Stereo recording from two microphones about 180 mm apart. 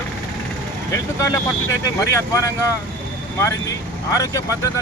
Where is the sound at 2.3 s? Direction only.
15° left (ahead or behind).